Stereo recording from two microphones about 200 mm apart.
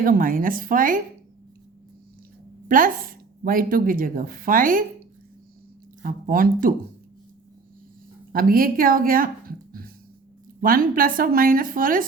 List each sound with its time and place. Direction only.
0.0 s speech: 45° right (ahead or behind)
2.6 s speech: 45° right (ahead or behind)
6.0 s speech: 45° right (ahead or behind)
8.3 s speech: 45° right (ahead or behind)